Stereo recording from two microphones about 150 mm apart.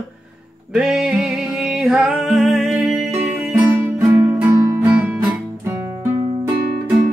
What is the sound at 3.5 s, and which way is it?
Music, 15° right (ahead or behind).